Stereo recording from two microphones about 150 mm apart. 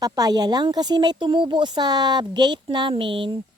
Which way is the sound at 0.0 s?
25° right (ahead or behind).